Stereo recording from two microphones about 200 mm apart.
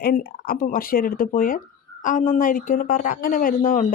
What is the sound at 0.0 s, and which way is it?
Speech, 50° left (ahead or behind).